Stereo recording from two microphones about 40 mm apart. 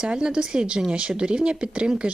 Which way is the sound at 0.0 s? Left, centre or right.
Centre.